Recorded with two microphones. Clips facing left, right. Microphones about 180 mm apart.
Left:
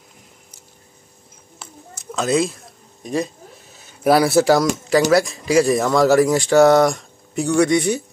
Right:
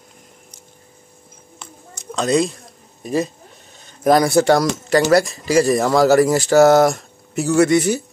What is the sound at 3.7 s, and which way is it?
Speech, 5° left (ahead or behind).